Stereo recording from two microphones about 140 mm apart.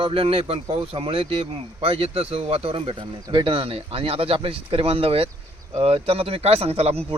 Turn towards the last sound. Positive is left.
turn(degrees=-45)  # may be behind; listen again after turning